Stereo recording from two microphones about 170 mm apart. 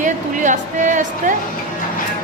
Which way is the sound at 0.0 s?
45° right (ahead or behind).